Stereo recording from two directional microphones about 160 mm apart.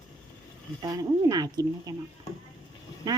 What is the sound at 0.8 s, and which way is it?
Speech, 25° right (ahead or behind).